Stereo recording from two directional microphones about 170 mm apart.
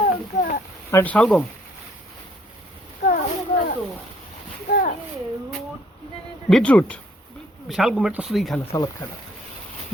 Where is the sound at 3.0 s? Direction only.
40° left (ahead or behind).